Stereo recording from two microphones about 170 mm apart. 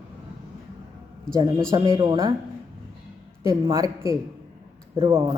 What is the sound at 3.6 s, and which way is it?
Speech, 20° right (ahead or behind).